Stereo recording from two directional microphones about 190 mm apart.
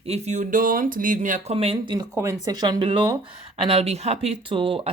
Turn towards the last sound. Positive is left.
turn(degrees=-30)  # may be behind; listen again after turning